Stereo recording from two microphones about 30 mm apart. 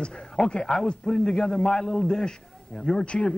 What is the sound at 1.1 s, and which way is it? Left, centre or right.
A man's voice, centre.